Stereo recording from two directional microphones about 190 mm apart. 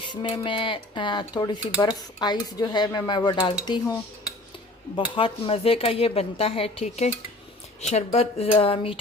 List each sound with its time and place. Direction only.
0.0 s speech: 25° left (ahead or behind)
5.1 s speech: 30° left (ahead or behind)